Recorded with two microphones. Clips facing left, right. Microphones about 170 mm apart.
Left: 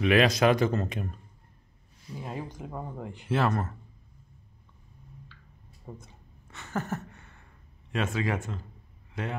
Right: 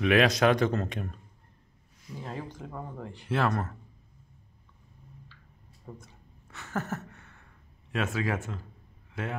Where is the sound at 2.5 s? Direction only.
15° left (ahead or behind).